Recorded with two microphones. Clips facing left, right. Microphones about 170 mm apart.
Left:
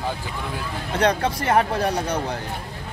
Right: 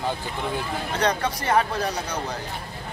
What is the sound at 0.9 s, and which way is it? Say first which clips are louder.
Speech: left 4 dB; 55° left (ahead or behind).